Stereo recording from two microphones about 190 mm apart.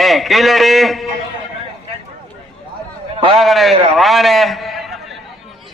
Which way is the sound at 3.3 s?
Centre (ahead or behind).